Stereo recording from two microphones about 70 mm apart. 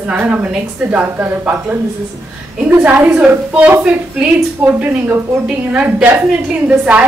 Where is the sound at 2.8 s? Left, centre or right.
Right.